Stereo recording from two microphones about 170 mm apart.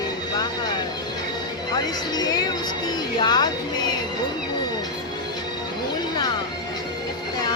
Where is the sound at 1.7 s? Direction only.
25° left (ahead or behind).